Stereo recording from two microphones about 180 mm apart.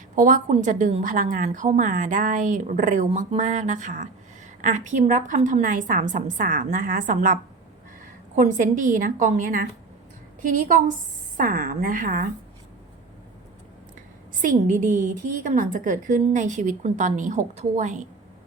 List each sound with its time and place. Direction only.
0.2 s a woman's voice: 45° right (ahead or behind)
8.4 s a woman's voice: 45° right (ahead or behind)
14.4 s a woman's voice: 45° right (ahead or behind)